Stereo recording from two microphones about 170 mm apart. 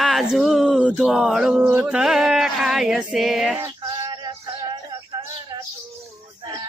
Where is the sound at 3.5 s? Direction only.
15° right (ahead or behind).